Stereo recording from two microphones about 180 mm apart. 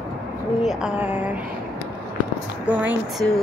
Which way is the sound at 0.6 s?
5° right (ahead or behind).